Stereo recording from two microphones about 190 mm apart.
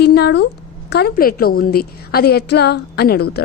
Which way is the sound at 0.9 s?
55° left (ahead or behind).